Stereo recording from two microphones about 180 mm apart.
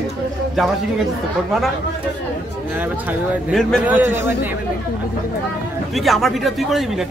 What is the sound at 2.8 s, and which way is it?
A man's voice, 10° right (ahead or behind).